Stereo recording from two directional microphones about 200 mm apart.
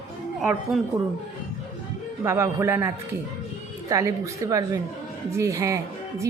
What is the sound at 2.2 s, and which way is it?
Speech, 15° right (ahead or behind).